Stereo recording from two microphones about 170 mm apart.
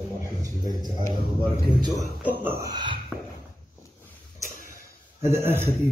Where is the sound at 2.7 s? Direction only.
30° right (ahead or behind).